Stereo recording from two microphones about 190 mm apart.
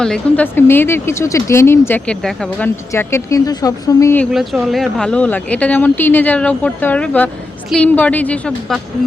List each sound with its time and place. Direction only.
0.0 s speech: 5° left (ahead or behind)
4.3 s speech: centre (ahead or behind)